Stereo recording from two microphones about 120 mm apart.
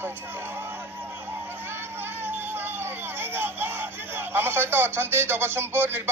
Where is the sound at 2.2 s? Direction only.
15° right (ahead or behind).